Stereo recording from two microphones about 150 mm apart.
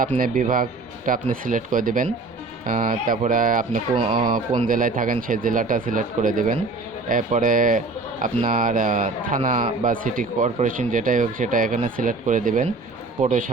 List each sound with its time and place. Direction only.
0.2 s a man's voice: 65° right (ahead or behind)
3.9 s speech: 35° right (ahead or behind)
4.7 s a man's voice: 65° right (ahead or behind)